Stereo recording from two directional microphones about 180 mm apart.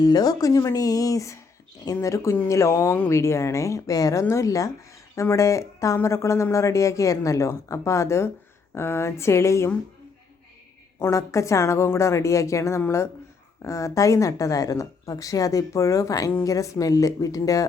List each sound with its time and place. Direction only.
0.0 s speech: 20° left (ahead or behind)
11.0 s speech: 15° left (ahead or behind)